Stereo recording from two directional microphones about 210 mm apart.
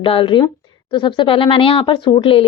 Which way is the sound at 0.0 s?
25° left (ahead or behind).